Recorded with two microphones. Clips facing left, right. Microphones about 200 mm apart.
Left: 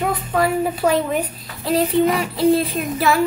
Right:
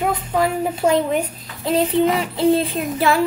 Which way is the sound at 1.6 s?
25° right (ahead or behind).